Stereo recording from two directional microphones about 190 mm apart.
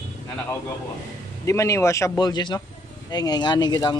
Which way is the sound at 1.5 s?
15° left (ahead or behind).